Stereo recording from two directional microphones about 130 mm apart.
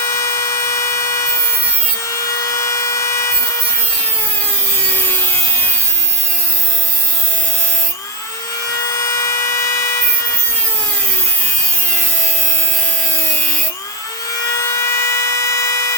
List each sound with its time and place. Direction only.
0.2 s tools: 25° left (ahead or behind)
2.0 s wood: 25° left (ahead or behind)
4.9 s a sound: 15° left (ahead or behind)
8.8 s tools: 25° left (ahead or behind)
14.5 s tools: 25° left (ahead or behind)